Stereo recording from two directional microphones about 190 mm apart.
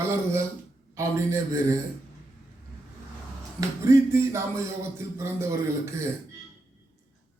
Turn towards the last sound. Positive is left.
turn(degrees=-15)  # may be behind; listen again after turning